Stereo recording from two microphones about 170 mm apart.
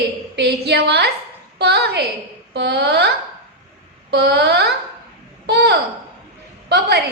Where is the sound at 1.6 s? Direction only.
75° right (ahead or behind).